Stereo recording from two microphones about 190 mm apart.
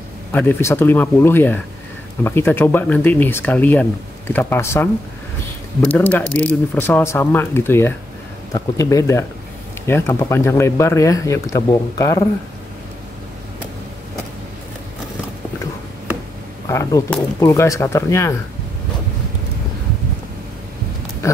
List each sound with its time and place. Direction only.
0.3 s speech: 10° left (ahead or behind)
5.9 s speech: 10° left (ahead or behind)
16.6 s speech: 15° left (ahead or behind)